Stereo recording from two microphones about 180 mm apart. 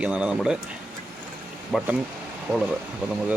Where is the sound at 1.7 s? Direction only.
5° right (ahead or behind).